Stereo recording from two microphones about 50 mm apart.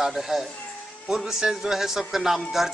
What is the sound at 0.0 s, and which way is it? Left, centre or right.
Speech, centre.